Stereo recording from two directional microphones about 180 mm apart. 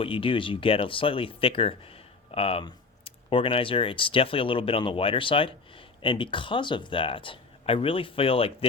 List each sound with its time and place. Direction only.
0.0 s speech: 30° left (ahead or behind)